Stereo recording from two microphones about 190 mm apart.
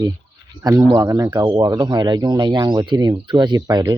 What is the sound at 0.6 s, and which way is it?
Speech, 20° right (ahead or behind).